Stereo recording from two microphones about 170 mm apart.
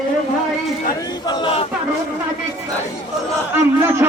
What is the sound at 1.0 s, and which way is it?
Speech, 25° left (ahead or behind).